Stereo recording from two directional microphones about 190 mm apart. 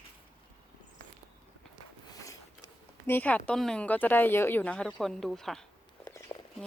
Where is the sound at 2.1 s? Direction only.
15° left (ahead or behind).